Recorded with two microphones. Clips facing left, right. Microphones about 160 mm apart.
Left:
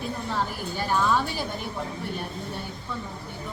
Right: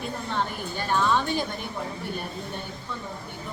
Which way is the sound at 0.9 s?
5° left (ahead or behind).